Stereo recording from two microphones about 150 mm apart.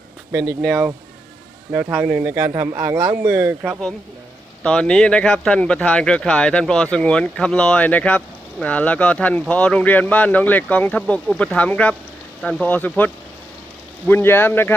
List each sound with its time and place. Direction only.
0.3 s speech: 20° right (ahead or behind)
0.6 s speech: centre (ahead or behind)
2.2 s speech: 20° right (ahead or behind)
4.6 s speech: 5° left (ahead or behind)
14.1 s speech: 15° left (ahead or behind)